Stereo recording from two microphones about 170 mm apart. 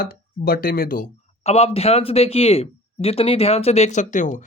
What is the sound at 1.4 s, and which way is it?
Speech, 35° left (ahead or behind).